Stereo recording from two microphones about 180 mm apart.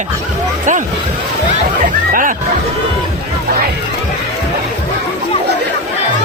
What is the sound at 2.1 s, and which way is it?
Speech, 50° right (ahead or behind).